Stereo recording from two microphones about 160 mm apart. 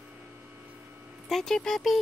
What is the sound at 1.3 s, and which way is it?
Speech, 5° left (ahead or behind).